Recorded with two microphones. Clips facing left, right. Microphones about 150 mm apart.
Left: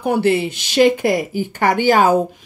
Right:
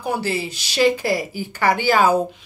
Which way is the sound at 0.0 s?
55° left (ahead or behind).